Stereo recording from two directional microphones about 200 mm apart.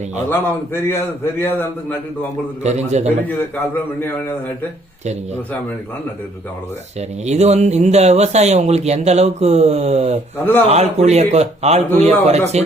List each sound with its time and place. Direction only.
0.3 s a man's voice: 10° left (ahead or behind)
2.6 s speech: 35° right (ahead or behind)
7.3 s speech: 35° right (ahead or behind)
10.3 s a man's voice: 10° left (ahead or behind)
10.7 s speech: 35° right (ahead or behind)